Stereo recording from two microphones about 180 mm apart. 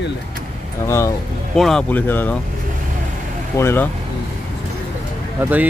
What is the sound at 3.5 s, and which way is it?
Speech, 15° left (ahead or behind).